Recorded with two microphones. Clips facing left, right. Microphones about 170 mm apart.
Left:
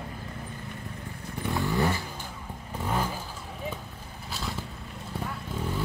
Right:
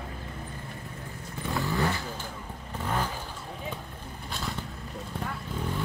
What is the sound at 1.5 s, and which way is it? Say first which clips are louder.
Vehicle: left 1 dB; 20° left (ahead or behind).